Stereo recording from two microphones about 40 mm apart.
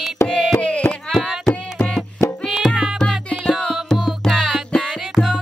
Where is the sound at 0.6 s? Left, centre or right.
Left.